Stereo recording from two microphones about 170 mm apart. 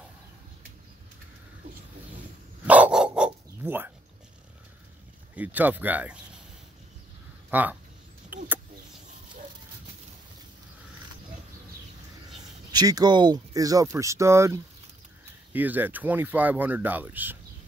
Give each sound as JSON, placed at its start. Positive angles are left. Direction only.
{"t": 2.6, "sound": "dog", "side_deg": -10}
{"t": 5.3, "sound": "speech", "side_deg": -10}
{"t": 7.5, "sound": "speech", "side_deg": -10}
{"t": 12.7, "sound": "speech", "side_deg": -25}